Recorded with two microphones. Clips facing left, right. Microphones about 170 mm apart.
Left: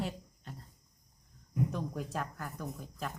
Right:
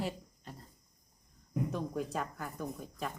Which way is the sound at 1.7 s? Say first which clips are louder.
Right 2 dB; centre (ahead or behind).